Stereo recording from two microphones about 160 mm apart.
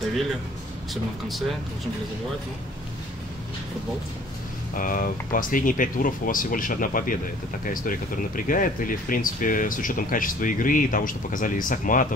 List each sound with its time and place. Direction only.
4.7 s speech: 60° left (ahead or behind)